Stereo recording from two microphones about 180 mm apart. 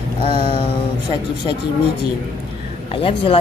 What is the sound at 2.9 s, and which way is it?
Speech, 30° left (ahead or behind).